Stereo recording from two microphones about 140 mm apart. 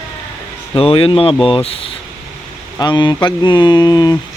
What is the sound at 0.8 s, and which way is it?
Speech, 40° left (ahead or behind).